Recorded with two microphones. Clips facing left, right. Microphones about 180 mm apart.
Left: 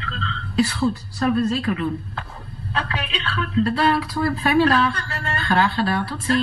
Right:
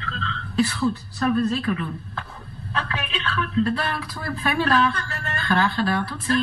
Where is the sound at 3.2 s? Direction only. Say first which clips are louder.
Left 1 dB; 35° left (ahead or behind).